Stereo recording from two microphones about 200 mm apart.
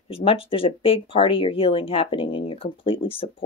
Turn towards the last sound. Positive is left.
turn(degrees=25)  # may be behind; listen again after turning